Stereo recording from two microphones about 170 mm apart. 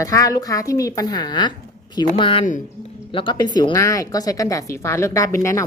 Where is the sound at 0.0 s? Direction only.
20° left (ahead or behind).